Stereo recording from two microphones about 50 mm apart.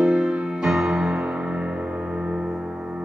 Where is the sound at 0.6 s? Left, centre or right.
Centre.